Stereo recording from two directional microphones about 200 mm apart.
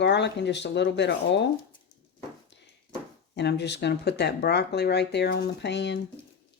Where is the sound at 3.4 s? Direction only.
60° left (ahead or behind).